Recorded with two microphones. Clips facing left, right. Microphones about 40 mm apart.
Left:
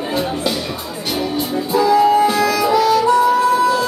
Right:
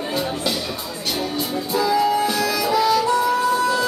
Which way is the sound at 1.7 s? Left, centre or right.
Centre.